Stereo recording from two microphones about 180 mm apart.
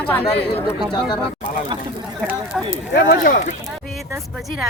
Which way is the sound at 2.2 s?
5° right (ahead or behind).